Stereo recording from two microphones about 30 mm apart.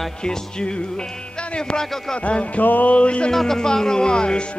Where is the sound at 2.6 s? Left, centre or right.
Left.